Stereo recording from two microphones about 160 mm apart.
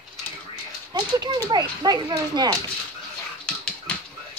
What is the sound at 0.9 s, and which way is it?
Speech, 25° right (ahead or behind).